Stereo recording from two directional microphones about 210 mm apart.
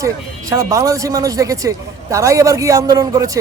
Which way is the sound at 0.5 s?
15° right (ahead or behind).